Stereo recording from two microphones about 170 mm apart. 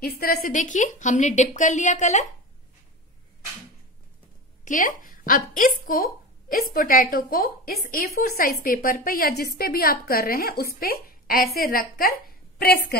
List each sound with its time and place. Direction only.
0.0 s a woman's voice: 60° left (ahead or behind); by 2.2 s 45° left (ahead or behind)
4.6 s a woman's voice: 50° left (ahead or behind)